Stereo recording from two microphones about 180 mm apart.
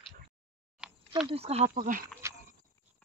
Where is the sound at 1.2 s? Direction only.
35° right (ahead or behind).